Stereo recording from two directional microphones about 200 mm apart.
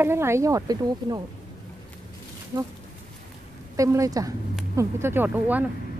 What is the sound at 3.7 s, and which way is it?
Speech, 15° right (ahead or behind).